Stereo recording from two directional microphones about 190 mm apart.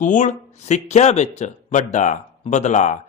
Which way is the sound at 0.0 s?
40° left (ahead or behind).